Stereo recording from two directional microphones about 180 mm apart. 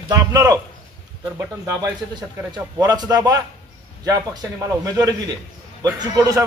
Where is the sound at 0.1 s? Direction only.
20° right (ahead or behind).